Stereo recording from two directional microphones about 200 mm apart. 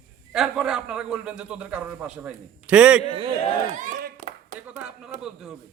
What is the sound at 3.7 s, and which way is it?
Clapping, 40° right (ahead or behind).